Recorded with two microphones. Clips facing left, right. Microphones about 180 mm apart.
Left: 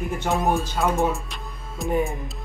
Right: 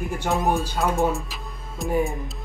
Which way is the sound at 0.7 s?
Centre (ahead or behind).